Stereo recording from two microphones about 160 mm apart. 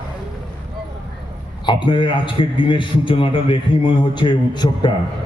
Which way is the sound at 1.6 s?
30° left (ahead or behind).